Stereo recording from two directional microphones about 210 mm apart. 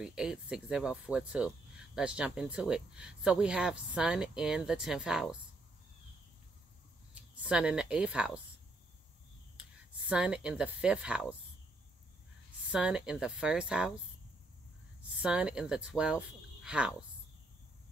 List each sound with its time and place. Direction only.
0.0 s speech: 5° right (ahead or behind)
7.2 s speech: 5° right (ahead or behind)
9.6 s speech: 5° right (ahead or behind)
12.7 s speech: 5° right (ahead or behind)
15.2 s speech: 5° right (ahead or behind)